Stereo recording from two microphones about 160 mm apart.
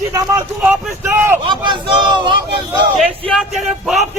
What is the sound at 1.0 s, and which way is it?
Speech, 15° right (ahead or behind).